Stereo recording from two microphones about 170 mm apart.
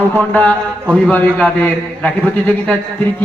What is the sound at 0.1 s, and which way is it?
Speech, 10° left (ahead or behind).